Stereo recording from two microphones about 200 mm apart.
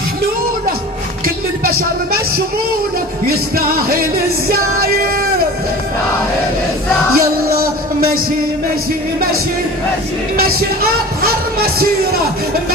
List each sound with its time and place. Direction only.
3.2 s music: 50° right (ahead or behind)
7.1 s music: 50° right (ahead or behind)
10.3 s music: 50° right (ahead or behind)
11.2 s speech: 50° right (ahead or behind)